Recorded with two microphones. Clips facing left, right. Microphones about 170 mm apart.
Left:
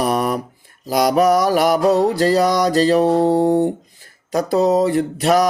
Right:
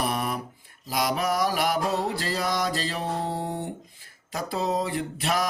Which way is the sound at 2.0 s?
40° left (ahead or behind).